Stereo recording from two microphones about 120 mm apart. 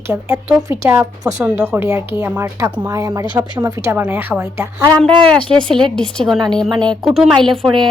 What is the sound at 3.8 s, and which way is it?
A woman's voice, 15° right (ahead or behind).